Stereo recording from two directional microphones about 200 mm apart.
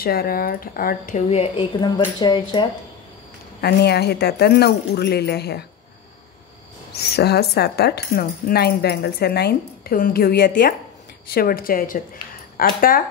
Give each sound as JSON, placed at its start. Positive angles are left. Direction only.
{"t": 0.0, "sound": "speech", "side_deg": 50}
{"t": 3.6, "sound": "speech", "side_deg": 55}
{"t": 6.9, "sound": "speech", "side_deg": 55}